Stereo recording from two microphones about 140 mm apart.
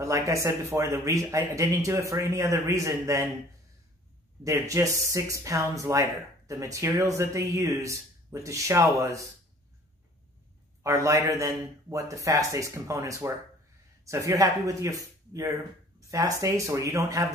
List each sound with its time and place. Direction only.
0.0 s speech: 20° right (ahead or behind)
4.5 s speech: 20° right (ahead or behind)
10.8 s speech: 20° right (ahead or behind)